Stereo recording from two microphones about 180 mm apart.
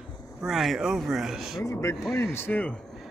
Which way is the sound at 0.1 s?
20° left (ahead or behind).